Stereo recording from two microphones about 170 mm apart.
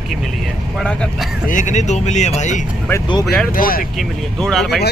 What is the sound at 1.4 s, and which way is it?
Speech, 45° left (ahead or behind).